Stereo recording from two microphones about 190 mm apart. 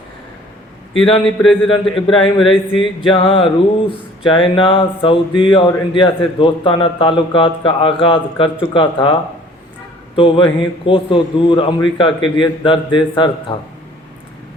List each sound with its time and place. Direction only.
1.5 s speech: 30° left (ahead or behind)
10.2 s speech: 25° left (ahead or behind)